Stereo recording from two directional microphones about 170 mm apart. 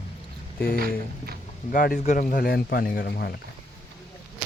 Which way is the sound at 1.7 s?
55° left (ahead or behind).